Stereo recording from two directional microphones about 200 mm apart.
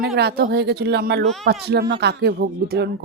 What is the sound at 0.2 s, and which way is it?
Speech, 55° right (ahead or behind).